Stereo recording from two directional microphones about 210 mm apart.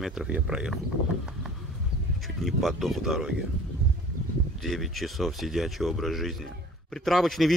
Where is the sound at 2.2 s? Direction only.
Centre (ahead or behind).